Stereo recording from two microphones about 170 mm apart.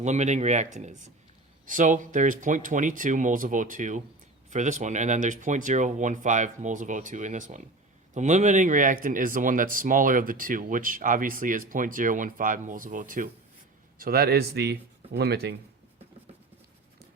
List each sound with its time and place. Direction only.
0.0 s speech: 45° right (ahead or behind)
14.0 s speech: 65° right (ahead or behind)